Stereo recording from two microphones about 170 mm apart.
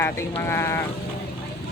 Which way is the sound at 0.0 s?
15° left (ahead or behind).